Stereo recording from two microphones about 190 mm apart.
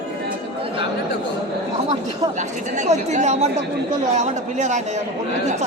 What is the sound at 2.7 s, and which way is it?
Speech, 40° right (ahead or behind).